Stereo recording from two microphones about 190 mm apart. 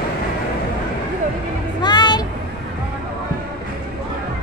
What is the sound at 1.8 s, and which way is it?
Vehicle, 20° left (ahead or behind).